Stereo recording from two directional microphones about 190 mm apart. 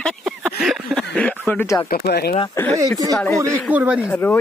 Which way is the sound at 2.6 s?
15° left (ahead or behind).